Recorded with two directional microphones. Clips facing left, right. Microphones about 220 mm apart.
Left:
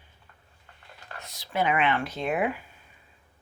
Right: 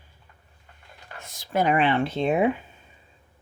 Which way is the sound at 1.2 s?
50° right (ahead or behind).